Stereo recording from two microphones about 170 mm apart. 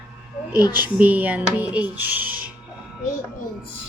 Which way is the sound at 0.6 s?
25° left (ahead or behind).